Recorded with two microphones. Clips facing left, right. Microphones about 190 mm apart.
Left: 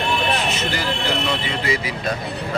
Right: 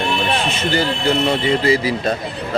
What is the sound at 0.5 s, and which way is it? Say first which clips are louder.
Speech: right 5 dB; 30° right (ahead or behind).